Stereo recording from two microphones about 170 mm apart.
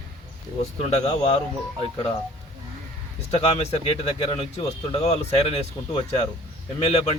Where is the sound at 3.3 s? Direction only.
35° left (ahead or behind).